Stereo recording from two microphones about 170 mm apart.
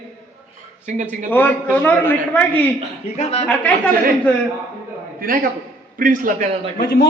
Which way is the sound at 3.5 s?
5° left (ahead or behind).